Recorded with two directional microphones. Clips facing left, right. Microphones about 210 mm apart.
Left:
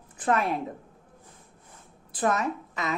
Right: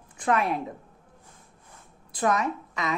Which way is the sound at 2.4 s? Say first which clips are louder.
Right 1 dB; centre (ahead or behind).